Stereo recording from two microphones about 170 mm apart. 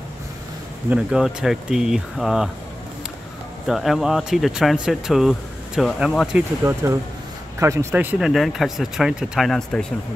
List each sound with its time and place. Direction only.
0.8 s speech: 5° right (ahead or behind)
3.6 s speech: centre (ahead or behind)
6.6 s speech: 15° right (ahead or behind); by 9.8 s 5° left (ahead or behind)